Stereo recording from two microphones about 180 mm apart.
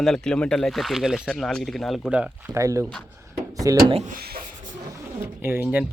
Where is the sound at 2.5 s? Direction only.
15° right (ahead or behind).